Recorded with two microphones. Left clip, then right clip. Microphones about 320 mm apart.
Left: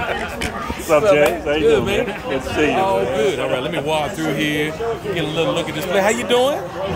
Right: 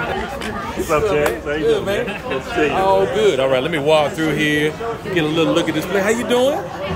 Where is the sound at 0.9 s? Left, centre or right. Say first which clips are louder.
Left 3 dB; left.